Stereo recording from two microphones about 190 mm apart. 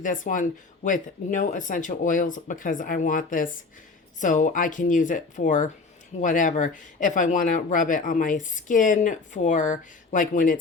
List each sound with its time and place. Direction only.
0.0 s speech: 45° left (ahead or behind)